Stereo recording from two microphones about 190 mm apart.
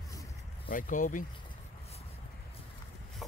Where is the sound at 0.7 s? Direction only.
45° left (ahead or behind).